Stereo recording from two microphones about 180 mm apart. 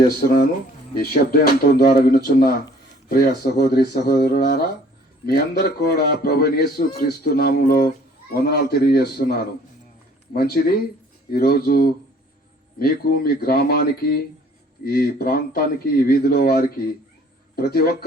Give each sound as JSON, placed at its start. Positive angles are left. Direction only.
{"t": 0.9, "sound": "a man's voice", "side_deg": 55}